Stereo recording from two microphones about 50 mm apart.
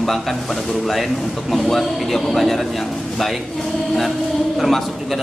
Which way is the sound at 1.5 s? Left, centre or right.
Centre.